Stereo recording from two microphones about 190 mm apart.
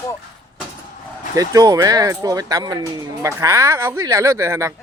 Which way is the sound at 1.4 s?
20° right (ahead or behind).